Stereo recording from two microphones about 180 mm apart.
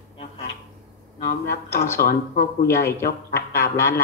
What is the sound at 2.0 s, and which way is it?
Speech, 55° left (ahead or behind).